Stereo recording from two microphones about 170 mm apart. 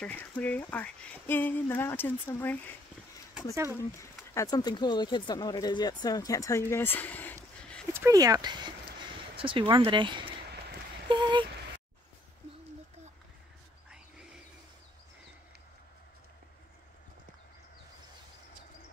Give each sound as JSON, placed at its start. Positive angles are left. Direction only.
{"t": 0.0, "sound": "speech", "side_deg": 10}
{"t": 4.2, "sound": "speech", "side_deg": 15}
{"t": 7.9, "sound": "speech", "side_deg": -15}